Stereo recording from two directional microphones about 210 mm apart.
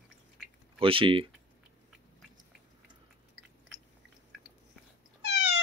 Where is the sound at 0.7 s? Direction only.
25° right (ahead or behind).